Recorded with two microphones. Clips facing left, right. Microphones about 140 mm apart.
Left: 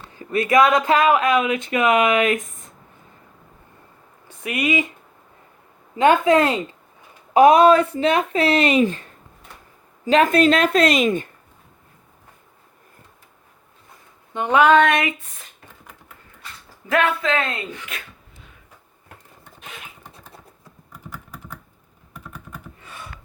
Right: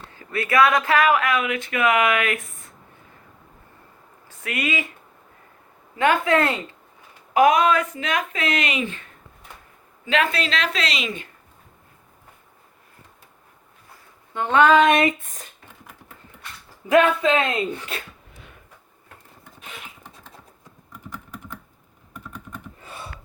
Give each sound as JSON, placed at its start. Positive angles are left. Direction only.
{"t": 0.2, "sound": "speech", "side_deg": 20}
{"t": 4.3, "sound": "speech", "side_deg": 15}
{"t": 6.0, "sound": "speech", "side_deg": 20}
{"t": 7.3, "sound": "speech", "side_deg": 30}
{"t": 10.1, "sound": "a woman's voice", "side_deg": 40}
{"t": 14.3, "sound": "speech", "side_deg": 15}
{"t": 14.6, "sound": "a sound", "side_deg": 0}
{"t": 16.9, "sound": "speech", "side_deg": -20}
{"t": 17.7, "sound": "speech", "side_deg": -30}
{"t": 22.8, "sound": "a sound", "side_deg": -30}